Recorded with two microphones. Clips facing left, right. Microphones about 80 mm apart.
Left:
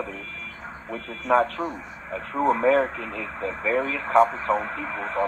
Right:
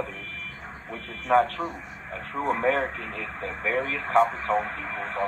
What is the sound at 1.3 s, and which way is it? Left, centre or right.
Speech, centre.